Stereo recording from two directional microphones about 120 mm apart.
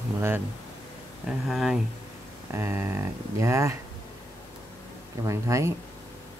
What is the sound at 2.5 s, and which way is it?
Speech, 20° right (ahead or behind).